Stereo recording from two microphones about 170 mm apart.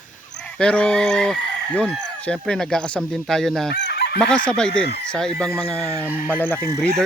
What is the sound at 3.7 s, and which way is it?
Chicken, 85° left.